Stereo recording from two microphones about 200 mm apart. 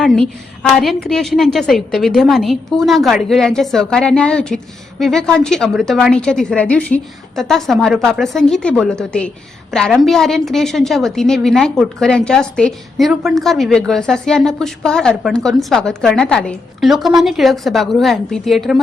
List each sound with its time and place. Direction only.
0.0 s a woman's voice: centre (ahead or behind)